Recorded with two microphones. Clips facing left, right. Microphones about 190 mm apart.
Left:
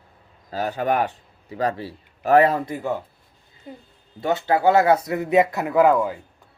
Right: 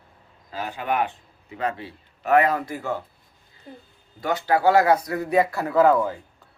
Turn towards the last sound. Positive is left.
turn(degrees=10)  # may be behind; listen again after turning